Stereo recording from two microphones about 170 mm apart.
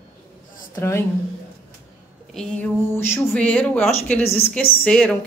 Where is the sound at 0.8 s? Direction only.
15° left (ahead or behind).